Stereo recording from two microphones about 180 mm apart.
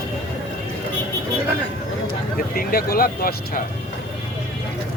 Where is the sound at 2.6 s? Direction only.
55° left (ahead or behind).